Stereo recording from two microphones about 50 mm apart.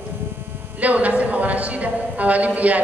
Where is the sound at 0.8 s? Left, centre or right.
Right.